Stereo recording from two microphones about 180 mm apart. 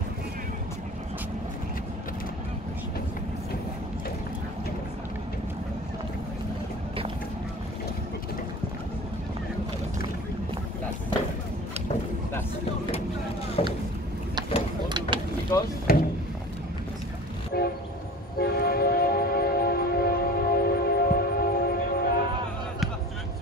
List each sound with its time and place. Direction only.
13.6 s boat: 30° left (ahead or behind)
14.9 s mechanisms: 25° right (ahead or behind)
15.5 s vehicle: 15° left (ahead or behind)
15.9 s a sound: 55° left (ahead or behind)
17.5 s train: 60° left (ahead or behind)